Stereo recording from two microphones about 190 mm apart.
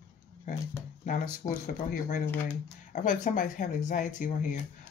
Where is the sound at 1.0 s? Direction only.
45° left (ahead or behind).